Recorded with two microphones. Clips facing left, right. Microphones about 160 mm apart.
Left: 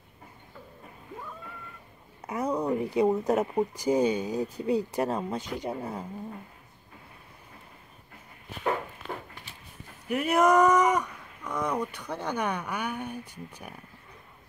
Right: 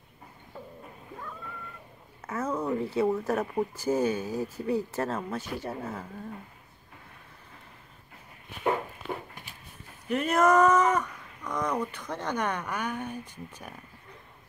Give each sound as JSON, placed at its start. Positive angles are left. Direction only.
{"t": 2.2, "sound": "speech", "side_deg": 15}
{"t": 10.0, "sound": "speech", "side_deg": 10}